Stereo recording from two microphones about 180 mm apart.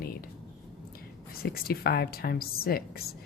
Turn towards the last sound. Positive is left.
turn(degrees=55)  # may be behind; listen again after turning